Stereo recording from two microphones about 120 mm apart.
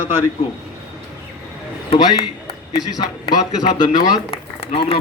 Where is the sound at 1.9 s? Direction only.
45° left (ahead or behind).